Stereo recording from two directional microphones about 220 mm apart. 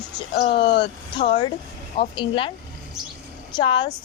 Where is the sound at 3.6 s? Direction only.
20° left (ahead or behind).